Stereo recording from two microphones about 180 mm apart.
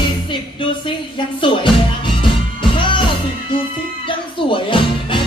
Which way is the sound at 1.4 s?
30° left (ahead or behind).